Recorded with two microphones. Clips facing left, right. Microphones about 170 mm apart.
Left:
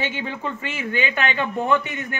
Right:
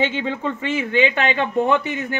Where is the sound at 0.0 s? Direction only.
25° right (ahead or behind).